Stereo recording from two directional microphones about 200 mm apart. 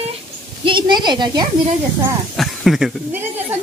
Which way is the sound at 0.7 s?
25° right (ahead or behind).